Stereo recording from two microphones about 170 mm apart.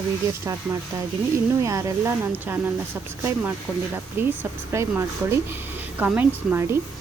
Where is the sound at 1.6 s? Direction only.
15° right (ahead or behind).